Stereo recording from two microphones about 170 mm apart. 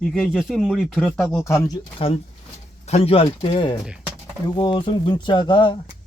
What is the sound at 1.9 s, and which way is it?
Speech, 35° left (ahead or behind).